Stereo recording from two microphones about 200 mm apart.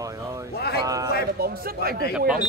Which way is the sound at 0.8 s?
20° right (ahead or behind).